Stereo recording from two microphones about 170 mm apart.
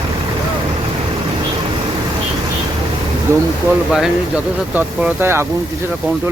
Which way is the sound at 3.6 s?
5° right (ahead or behind).